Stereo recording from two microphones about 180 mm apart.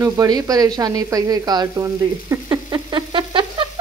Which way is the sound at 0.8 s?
20° right (ahead or behind).